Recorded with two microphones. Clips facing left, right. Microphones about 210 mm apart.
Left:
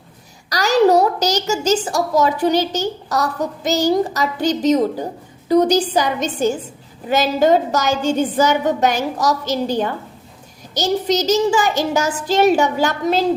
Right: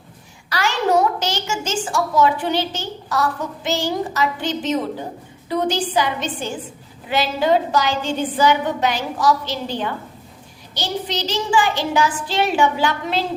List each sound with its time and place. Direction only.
0.5 s a child's voice: 40° left (ahead or behind)